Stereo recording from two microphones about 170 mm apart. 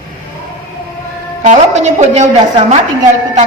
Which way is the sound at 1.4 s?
45° right (ahead or behind).